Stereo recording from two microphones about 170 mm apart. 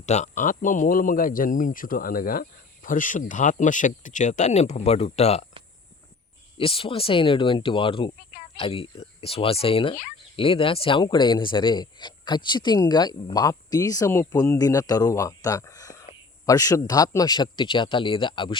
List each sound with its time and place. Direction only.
0.0 s a man's voice: 40° left (ahead or behind)
6.6 s speech: 35° left (ahead or behind)